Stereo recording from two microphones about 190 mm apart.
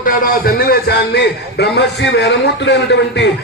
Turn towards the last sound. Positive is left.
turn(degrees=70)  # may be behind; listen again after turning